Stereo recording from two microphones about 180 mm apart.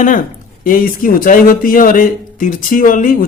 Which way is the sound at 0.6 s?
50° left (ahead or behind).